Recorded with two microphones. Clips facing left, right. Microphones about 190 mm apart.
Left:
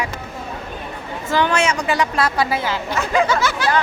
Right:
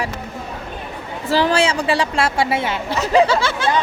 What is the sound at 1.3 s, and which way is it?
A woman's voice, 35° right (ahead or behind).